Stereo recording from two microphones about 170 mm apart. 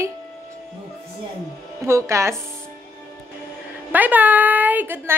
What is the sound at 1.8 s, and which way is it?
Speech, 15° right (ahead or behind).